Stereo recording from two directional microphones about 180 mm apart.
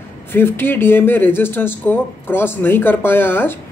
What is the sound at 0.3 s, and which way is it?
Speech, 10° left (ahead or behind).